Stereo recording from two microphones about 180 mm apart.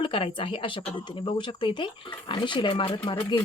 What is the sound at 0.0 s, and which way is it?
Speech, 30° left (ahead or behind).